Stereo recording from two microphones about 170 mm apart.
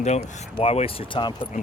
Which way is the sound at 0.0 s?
40° left (ahead or behind).